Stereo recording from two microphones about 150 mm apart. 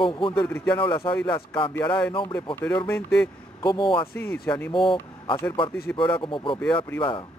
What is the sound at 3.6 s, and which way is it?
Speech, 35° left (ahead or behind).